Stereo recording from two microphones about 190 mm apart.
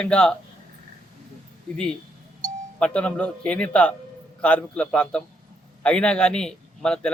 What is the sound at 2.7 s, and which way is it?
Speech, 5° left (ahead or behind).